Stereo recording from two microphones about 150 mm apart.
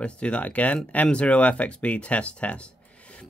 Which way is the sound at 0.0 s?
5° left (ahead or behind).